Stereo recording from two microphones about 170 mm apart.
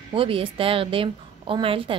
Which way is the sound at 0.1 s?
30° right (ahead or behind).